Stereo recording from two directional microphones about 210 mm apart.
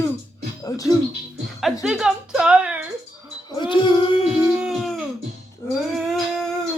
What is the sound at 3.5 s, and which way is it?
Music, 20° left (ahead or behind).